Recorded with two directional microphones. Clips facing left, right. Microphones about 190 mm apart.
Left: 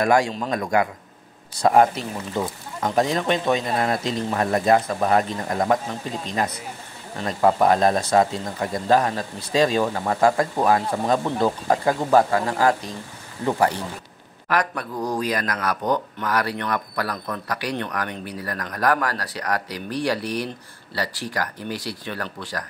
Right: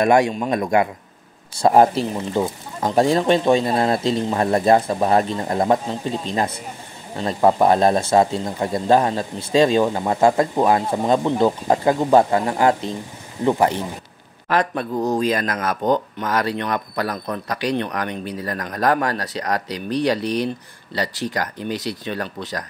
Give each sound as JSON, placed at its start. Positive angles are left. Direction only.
{"t": 0.0, "sound": "speech", "side_deg": -25}